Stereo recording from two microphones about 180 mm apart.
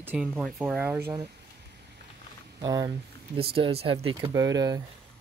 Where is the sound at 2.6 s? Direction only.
20° right (ahead or behind).